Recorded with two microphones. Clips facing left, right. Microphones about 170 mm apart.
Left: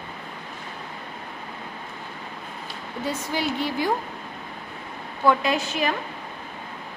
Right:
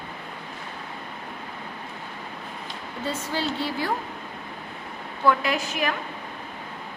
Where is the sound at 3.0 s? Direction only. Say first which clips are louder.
Left 1 dB; 15° left (ahead or behind).